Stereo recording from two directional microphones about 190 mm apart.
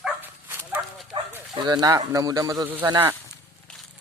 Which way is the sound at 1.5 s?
20° right (ahead or behind).